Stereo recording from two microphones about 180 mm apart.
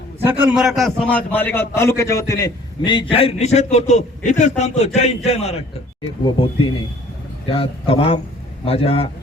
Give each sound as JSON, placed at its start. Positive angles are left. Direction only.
{"t": 0.3, "sound": "a man's voice", "side_deg": -5}